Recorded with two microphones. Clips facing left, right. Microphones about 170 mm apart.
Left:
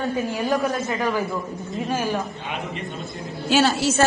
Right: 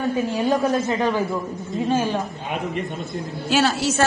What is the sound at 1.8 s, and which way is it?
Speech, 20° right (ahead or behind).